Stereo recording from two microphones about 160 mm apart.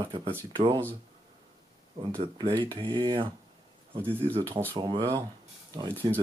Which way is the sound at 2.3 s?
30° right (ahead or behind).